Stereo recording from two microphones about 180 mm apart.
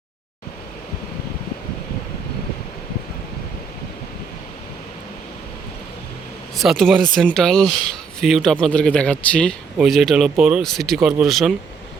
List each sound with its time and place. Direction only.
6.6 s speech: centre (ahead or behind)